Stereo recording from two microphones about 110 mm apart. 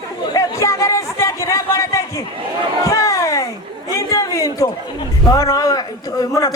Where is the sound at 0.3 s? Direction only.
30° left (ahead or behind).